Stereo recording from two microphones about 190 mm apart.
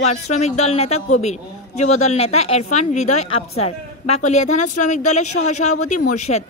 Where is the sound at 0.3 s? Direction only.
35° left (ahead or behind).